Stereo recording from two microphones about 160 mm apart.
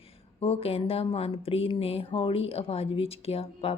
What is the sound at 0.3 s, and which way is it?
A woman's voice, 40° left (ahead or behind).